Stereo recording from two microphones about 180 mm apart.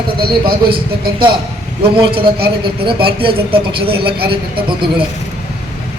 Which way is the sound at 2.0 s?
30° right (ahead or behind).